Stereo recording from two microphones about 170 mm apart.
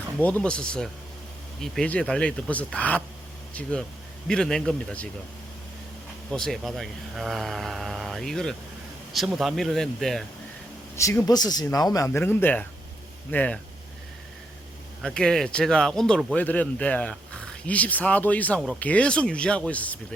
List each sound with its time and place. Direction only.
0.2 s speech: 10° left (ahead or behind)
6.3 s speech: centre (ahead or behind)
10.9 s speech: 15° left (ahead or behind)
15.0 s speech: 5° left (ahead or behind)